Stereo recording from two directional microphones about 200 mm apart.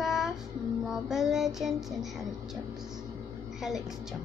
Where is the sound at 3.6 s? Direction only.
Centre (ahead or behind).